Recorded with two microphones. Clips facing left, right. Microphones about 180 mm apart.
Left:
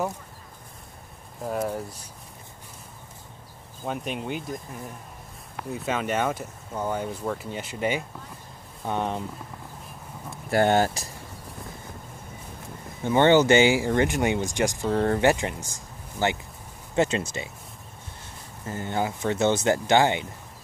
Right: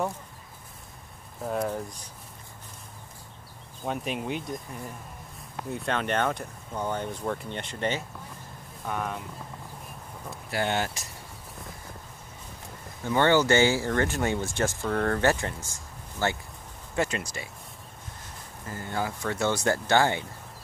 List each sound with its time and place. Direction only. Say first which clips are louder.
1.4 s speech: left 1 dB; 5° left (ahead or behind)
3.8 s speech: even; centre (ahead or behind)
5.7 s speech: left 1 dB; 5° left (ahead or behind)
8.8 s speech: left 4 dB; 25° left (ahead or behind)
10.5 s speech: left 8 dB; 45° left (ahead or behind)
13.0 s speech: left 4 dB; 20° left (ahead or behind)
18.7 s speech: left 4 dB; 20° left (ahead or behind)